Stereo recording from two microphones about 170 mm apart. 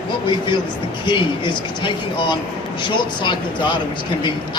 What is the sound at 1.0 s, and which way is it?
Speech, 25° left (ahead or behind).